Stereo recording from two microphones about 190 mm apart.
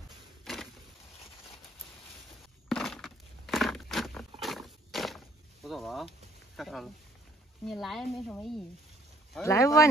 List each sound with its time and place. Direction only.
0.5 s vehicle: centre (ahead or behind)
2.7 s a sound: centre (ahead or behind)
6.5 s a woman's voice: centre (ahead or behind)
9.4 s speech: 15° left (ahead or behind)